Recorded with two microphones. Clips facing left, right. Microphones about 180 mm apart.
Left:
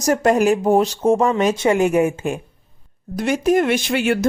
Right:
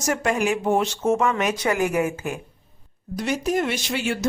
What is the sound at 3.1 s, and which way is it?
Speech, 50° left (ahead or behind).